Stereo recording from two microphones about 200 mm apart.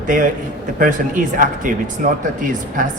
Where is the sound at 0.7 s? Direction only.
40° right (ahead or behind).